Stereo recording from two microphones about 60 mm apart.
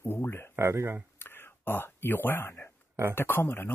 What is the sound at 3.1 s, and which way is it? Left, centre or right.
Speech, left.